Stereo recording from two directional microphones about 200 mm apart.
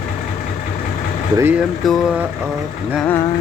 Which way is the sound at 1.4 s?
10° right (ahead or behind).